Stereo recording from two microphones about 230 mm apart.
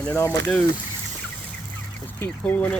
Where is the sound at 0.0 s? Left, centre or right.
Centre.